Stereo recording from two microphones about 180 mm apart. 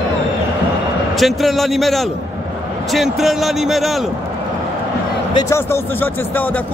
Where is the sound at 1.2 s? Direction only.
Centre (ahead or behind).